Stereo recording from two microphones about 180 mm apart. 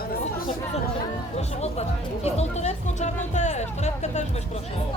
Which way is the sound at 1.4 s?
35° left (ahead or behind).